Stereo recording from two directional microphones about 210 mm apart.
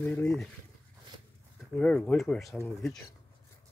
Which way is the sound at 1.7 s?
5° left (ahead or behind).